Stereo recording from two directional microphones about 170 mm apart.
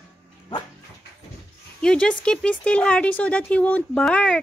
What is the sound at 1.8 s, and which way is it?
Speech, 5° left (ahead or behind).